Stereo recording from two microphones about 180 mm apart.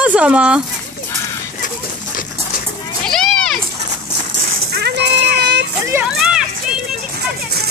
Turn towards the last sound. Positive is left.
turn(degrees=-5)  # may be behind; listen again after turning